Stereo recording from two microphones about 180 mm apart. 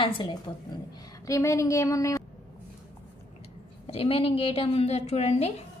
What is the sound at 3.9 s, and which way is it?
A woman's voice, 35° left (ahead or behind).